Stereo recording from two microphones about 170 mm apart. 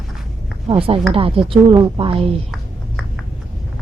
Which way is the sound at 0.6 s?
35° right (ahead or behind).